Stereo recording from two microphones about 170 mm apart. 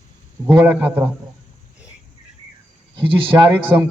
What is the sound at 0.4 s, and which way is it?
Speech, 10° right (ahead or behind).